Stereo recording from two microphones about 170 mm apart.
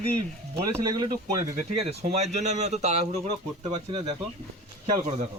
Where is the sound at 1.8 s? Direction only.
40° right (ahead or behind).